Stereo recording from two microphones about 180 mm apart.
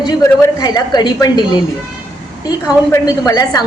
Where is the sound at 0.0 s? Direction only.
20° left (ahead or behind).